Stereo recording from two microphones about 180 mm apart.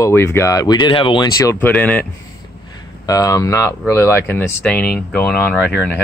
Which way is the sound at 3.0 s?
20° left (ahead or behind).